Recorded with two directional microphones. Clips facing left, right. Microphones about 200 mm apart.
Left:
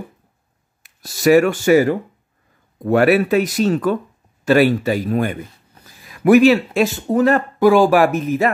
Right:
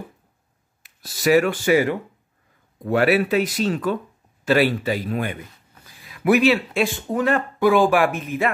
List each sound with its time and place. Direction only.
0.8 s speech: 45° left (ahead or behind)